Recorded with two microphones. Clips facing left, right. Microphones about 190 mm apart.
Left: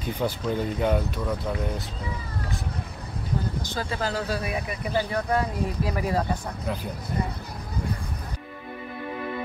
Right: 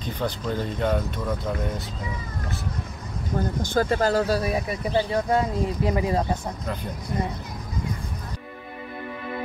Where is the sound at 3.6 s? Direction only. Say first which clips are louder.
Right 8 dB; 50° right (ahead or behind); by 6.4 s 25° right (ahead or behind).